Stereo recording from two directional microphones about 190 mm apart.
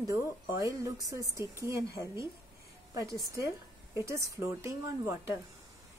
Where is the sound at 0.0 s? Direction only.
15° right (ahead or behind).